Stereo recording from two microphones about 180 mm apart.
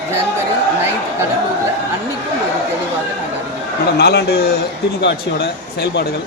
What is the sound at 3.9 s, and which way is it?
Speech, 60° left (ahead or behind).